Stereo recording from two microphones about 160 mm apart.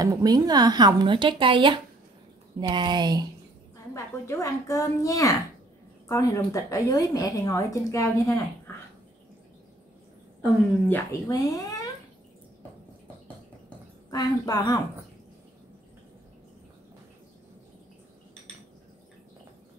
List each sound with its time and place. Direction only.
0.0 s speech: 25° right (ahead or behind)
3.9 s a woman's voice: 20° left (ahead or behind)
10.9 s a woman's voice: 20° left (ahead or behind)
14.1 s a woman's voice: 25° left (ahead or behind)